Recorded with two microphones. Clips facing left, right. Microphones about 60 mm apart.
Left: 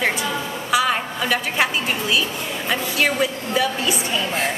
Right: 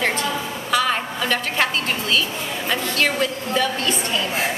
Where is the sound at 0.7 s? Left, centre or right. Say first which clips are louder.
Left 1 dB; centre.